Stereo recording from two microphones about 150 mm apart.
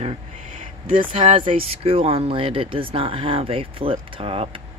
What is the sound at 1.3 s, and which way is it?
Speech, 35° right (ahead or behind).